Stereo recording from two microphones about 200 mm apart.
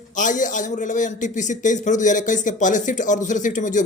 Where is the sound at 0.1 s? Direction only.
40° left (ahead or behind).